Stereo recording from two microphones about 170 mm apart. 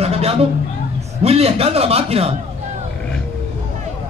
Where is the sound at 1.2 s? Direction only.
35° right (ahead or behind).